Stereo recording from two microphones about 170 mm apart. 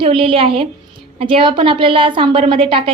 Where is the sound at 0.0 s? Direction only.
30° right (ahead or behind).